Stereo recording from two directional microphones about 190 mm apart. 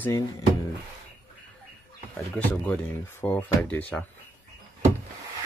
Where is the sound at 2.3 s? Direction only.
10° left (ahead or behind).